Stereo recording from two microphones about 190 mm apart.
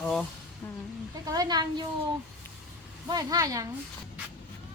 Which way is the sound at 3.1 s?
20° right (ahead or behind).